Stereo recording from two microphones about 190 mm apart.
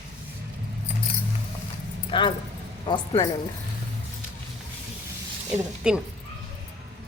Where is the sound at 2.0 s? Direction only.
25° left (ahead or behind).